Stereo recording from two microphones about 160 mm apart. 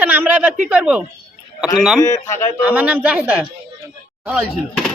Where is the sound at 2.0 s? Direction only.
20° left (ahead or behind).